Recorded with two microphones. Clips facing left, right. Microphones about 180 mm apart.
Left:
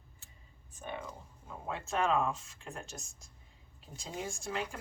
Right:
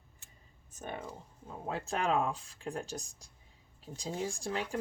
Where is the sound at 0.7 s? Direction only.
45° right (ahead or behind).